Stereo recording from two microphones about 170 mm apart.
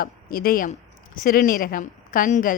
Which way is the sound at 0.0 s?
60° left (ahead or behind).